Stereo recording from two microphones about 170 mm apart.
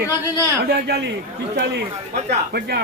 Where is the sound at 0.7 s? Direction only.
75° right (ahead or behind).